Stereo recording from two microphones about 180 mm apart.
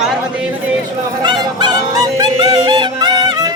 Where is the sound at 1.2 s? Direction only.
25° right (ahead or behind).